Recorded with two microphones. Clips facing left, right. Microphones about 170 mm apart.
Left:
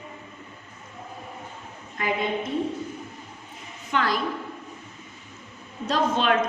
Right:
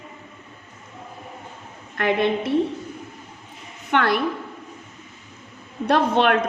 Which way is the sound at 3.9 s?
65° right (ahead or behind).